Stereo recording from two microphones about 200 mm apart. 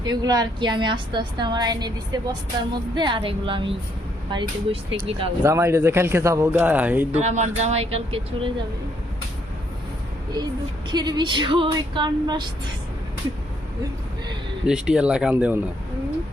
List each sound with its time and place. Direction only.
0.0 s a woman's voice: 20° right (ahead or behind)
5.4 s speech: 15° right (ahead or behind)
7.1 s a woman's voice: 35° right (ahead or behind)
10.4 s a woman's voice: 20° right (ahead or behind)
14.7 s speech: 5° right (ahead or behind)